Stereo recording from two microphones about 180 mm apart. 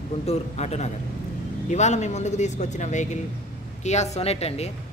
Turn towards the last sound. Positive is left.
turn(degrees=35)  # may be behind; listen again after turning